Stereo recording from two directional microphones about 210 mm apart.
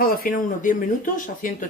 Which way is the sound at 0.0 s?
45° left (ahead or behind).